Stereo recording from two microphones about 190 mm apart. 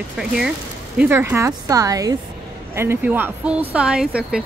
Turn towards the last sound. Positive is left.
turn(degrees=-5)  # may be behind; listen again after turning